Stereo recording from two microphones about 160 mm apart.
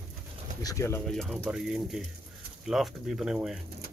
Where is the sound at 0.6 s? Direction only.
20° left (ahead or behind).